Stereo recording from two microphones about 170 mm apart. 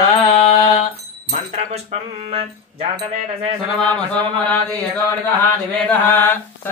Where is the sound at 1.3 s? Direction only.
40° right (ahead or behind).